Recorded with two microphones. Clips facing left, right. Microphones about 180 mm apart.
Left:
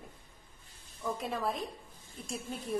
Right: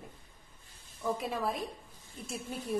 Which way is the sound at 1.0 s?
5° right (ahead or behind).